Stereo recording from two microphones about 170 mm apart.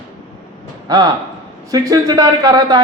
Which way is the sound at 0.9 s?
20° right (ahead or behind).